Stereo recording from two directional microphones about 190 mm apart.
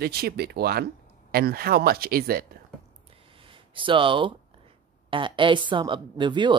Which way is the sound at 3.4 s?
25° right (ahead or behind).